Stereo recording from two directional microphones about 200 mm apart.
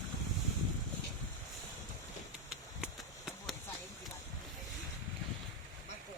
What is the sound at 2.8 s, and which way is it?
Horse, centre (ahead or behind).